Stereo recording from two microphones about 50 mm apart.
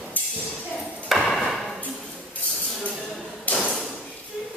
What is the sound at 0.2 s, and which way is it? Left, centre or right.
Music, left.